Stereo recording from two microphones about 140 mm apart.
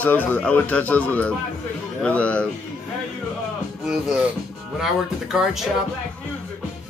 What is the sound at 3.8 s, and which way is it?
Speech, 5° right (ahead or behind).